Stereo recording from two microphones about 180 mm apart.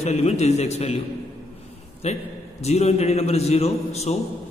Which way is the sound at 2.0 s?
35° left (ahead or behind).